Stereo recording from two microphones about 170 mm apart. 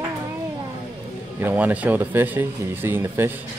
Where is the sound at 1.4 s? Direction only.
10° right (ahead or behind).